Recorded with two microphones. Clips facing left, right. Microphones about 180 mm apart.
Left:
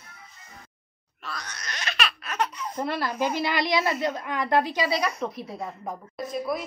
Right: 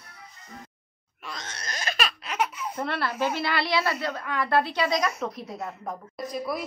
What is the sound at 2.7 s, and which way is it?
A woman's voice, 10° left (ahead or behind).